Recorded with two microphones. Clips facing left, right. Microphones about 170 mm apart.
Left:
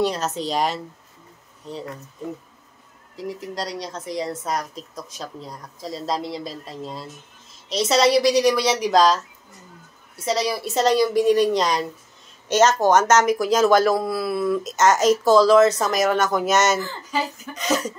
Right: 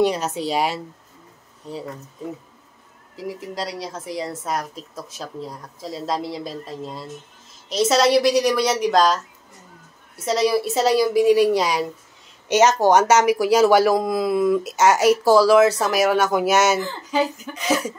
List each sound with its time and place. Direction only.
0.0 s speech: 10° right (ahead or behind)
3.2 s speech: 5° right (ahead or behind)